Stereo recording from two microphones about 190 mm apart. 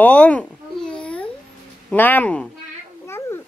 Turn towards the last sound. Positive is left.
turn(degrees=15)  # may be behind; listen again after turning